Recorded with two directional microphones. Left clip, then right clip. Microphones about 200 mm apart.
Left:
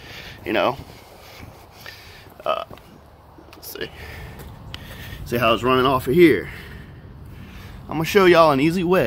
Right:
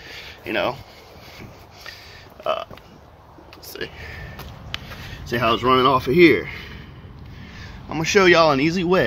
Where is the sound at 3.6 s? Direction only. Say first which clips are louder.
Even; 10° left (ahead or behind).